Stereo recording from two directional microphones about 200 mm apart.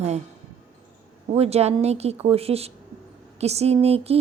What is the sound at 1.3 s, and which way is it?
Speech, 30° right (ahead or behind).